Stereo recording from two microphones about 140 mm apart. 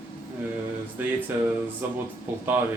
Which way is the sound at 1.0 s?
15° right (ahead or behind).